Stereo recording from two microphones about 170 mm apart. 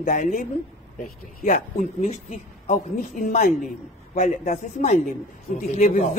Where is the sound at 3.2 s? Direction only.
55° left (ahead or behind).